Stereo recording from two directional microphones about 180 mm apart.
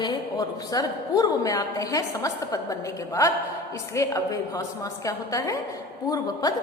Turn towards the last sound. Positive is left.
turn(degrees=20)  # may be behind; listen again after turning